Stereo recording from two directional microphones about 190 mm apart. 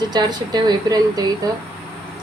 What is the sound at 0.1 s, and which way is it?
Speech, 20° right (ahead or behind).